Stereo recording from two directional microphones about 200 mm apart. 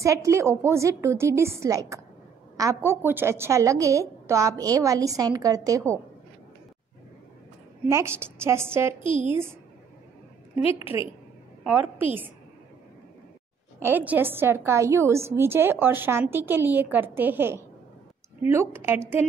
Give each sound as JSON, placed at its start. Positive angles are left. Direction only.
{"t": 0.0, "sound": "a woman's voice", "side_deg": -15}
{"t": 7.9, "sound": "a woman's voice", "side_deg": -10}
{"t": 11.6, "sound": "a woman's voice", "side_deg": -10}
{"t": 13.7, "sound": "a woman's voice", "side_deg": -10}